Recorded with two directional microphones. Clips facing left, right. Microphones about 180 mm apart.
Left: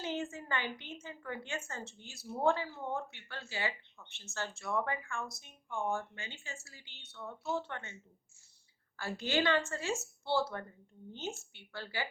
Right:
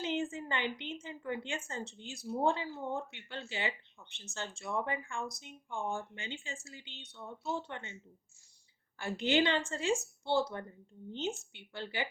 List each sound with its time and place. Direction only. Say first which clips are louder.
0.0 s a woman's voice: right 3 dB; 20° right (ahead or behind)
9.0 s speech: right 4 dB; 20° right (ahead or behind)